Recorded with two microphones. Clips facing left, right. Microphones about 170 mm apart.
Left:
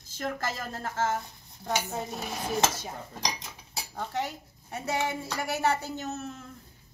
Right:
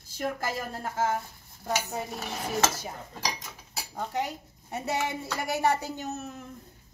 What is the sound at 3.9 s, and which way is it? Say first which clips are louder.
A woman's voice: right 1 dB; 10° right (ahead or behind).